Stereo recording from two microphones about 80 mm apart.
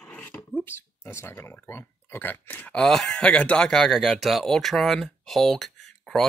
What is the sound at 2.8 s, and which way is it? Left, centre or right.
Speech, centre.